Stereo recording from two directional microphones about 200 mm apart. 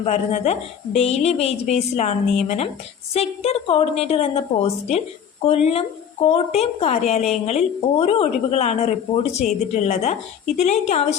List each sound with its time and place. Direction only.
0.0 s a woman's voice: 35° left (ahead or behind)